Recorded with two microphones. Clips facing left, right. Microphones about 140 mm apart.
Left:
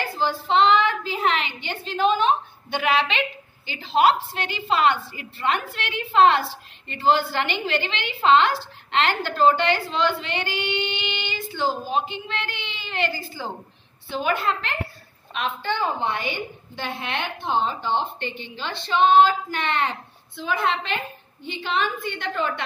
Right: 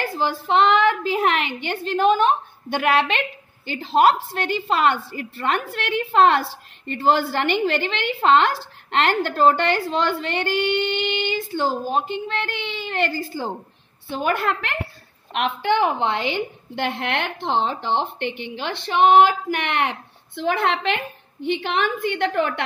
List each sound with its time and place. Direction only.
0.5 s a woman's voice: 55° right (ahead or behind)